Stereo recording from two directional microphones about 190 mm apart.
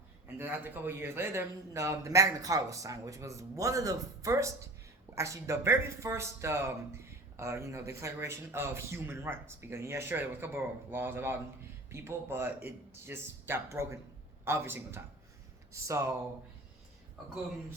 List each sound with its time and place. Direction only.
0.3 s speech: 10° right (ahead or behind)